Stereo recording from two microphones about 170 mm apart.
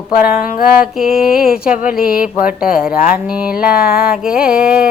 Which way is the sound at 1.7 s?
55° left (ahead or behind).